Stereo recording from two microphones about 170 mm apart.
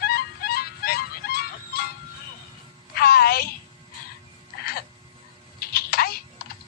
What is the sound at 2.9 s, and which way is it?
Music, 65° left (ahead or behind).